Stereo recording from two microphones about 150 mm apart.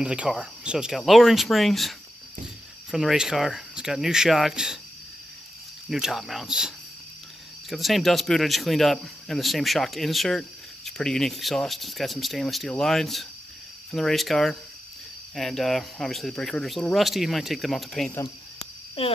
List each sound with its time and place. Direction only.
0.0 s speech: 5° right (ahead or behind)
5.9 s speech: 5° right (ahead or behind)
7.7 s speech: centre (ahead or behind)
19.0 s speech: 40° left (ahead or behind)